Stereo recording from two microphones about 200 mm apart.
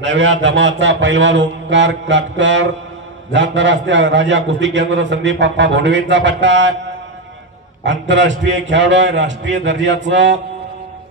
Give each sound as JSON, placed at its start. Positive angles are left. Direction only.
{"t": 0.0, "sound": "a man's voice", "side_deg": -65}
{"t": 7.8, "sound": "a man's voice", "side_deg": -65}